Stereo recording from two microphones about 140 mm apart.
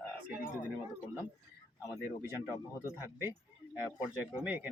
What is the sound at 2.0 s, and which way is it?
Speech, 15° right (ahead or behind).